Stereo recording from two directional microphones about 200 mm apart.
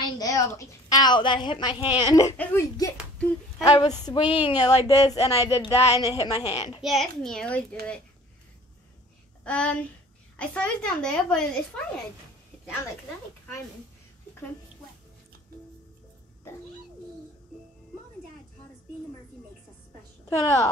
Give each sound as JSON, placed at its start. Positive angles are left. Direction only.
{"t": 0.2, "sound": "a woman's voice", "side_deg": 15}
{"t": 6.8, "sound": "a woman's voice", "side_deg": 0}
{"t": 9.4, "sound": "a sound", "side_deg": 5}
{"t": 10.3, "sound": "a woman's voice", "side_deg": 5}